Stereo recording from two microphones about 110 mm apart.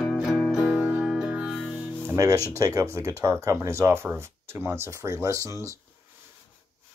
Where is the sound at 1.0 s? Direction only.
5° right (ahead or behind).